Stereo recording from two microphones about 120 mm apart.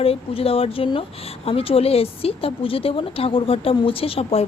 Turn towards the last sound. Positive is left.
turn(degrees=55)  # may be behind; listen again after turning